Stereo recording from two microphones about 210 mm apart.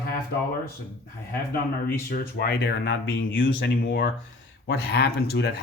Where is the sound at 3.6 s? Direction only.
45° left (ahead or behind).